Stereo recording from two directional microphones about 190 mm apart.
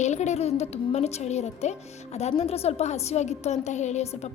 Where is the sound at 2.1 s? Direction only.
35° left (ahead or behind).